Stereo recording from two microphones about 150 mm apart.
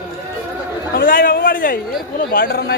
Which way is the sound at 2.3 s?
75° left (ahead or behind).